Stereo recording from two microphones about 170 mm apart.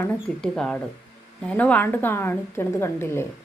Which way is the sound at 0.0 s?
5° left (ahead or behind).